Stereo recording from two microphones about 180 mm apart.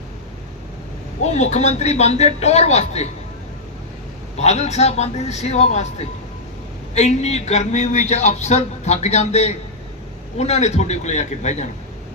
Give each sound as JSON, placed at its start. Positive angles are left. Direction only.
{"t": 1.3, "sound": "a man's voice", "side_deg": 40}
{"t": 4.4, "sound": "a man's voice", "side_deg": 35}